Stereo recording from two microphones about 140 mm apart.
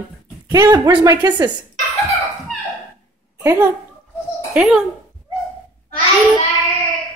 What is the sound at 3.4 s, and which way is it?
Speech, 20° right (ahead or behind).